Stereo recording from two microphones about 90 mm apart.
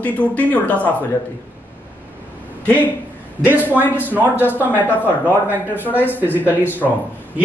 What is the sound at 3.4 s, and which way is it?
Speech, 20° right (ahead or behind).